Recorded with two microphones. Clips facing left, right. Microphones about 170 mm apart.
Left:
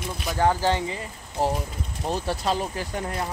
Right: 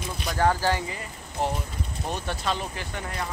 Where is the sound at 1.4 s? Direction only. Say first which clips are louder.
Left 3 dB; 35° left (ahead or behind).